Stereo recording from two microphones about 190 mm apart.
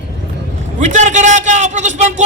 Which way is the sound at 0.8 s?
40° right (ahead or behind).